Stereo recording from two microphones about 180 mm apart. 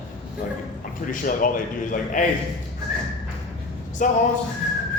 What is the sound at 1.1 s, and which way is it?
A man's voice, 50° left (ahead or behind).